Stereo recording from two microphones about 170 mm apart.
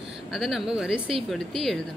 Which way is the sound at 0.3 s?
Centre (ahead or behind).